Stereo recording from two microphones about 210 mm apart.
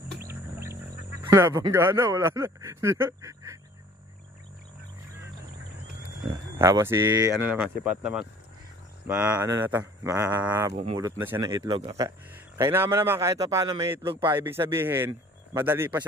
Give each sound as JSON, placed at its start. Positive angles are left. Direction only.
{"t": 0.2, "sound": "a sound", "side_deg": -10}
{"t": 6.3, "sound": "speech", "side_deg": -15}
{"t": 10.8, "sound": "speech", "side_deg": -25}
{"t": 11.1, "sound": "speech", "side_deg": -10}